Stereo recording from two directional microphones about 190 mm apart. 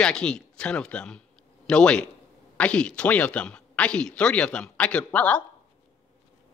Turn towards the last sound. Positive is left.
turn(degrees=5)  # may be behind; listen again after turning